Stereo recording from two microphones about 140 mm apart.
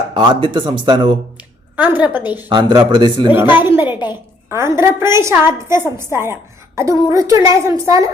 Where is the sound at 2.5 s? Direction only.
30° right (ahead or behind).